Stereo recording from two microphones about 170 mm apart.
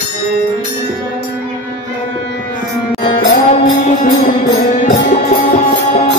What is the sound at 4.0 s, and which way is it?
Music, 50° left (ahead or behind).